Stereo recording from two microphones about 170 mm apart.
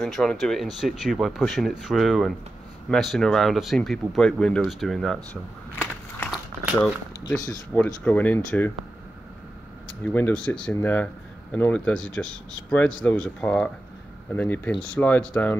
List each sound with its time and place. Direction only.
0.0 s speech: 5° left (ahead or behind)
10.0 s speech: 10° left (ahead or behind)